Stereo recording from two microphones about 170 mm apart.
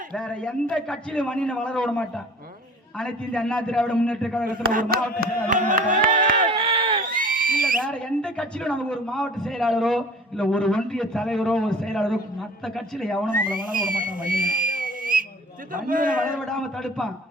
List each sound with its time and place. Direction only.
0.1 s a man's voice: 5° left (ahead or behind)
4.4 s speech: 55° right (ahead or behind)
6.5 s a sound: 30° right (ahead or behind)
7.1 s a sound: 55° right (ahead or behind)
7.8 s a man's voice: 5° left (ahead or behind)
13.3 s a man's voice: 55° right (ahead or behind)
16.5 s a man's voice: 5° left (ahead or behind)